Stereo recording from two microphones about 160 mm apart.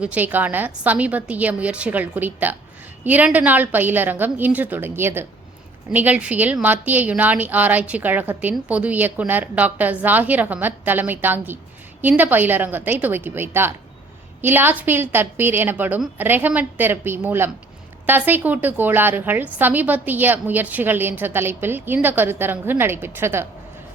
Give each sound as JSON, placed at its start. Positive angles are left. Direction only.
{"t": 0.0, "sound": "a woman's voice", "side_deg": -10}